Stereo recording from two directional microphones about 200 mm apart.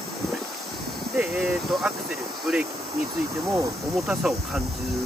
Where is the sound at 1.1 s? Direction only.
5° right (ahead or behind).